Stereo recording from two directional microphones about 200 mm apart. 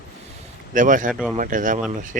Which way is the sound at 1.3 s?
40° right (ahead or behind).